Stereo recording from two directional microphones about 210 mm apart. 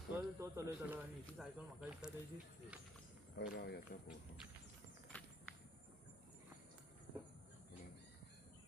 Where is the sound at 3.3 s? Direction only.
55° left (ahead or behind).